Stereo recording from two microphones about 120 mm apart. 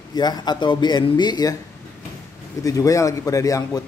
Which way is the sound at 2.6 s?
30° left (ahead or behind).